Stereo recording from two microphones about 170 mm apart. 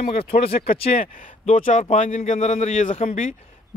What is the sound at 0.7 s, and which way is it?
Speech, 35° left (ahead or behind).